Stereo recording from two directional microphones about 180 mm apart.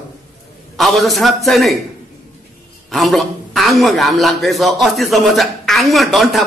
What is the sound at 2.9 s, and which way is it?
A man's voice, centre (ahead or behind).